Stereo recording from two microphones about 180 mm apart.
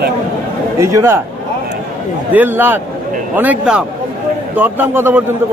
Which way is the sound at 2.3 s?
10° right (ahead or behind).